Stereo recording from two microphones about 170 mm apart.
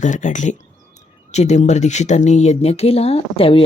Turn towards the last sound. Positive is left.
turn(degrees=35)  # may be behind; listen again after turning